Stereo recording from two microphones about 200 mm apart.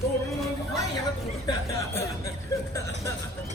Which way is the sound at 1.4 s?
15° left (ahead or behind).